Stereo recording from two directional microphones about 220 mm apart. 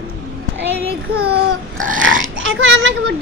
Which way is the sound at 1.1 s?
40° right (ahead or behind).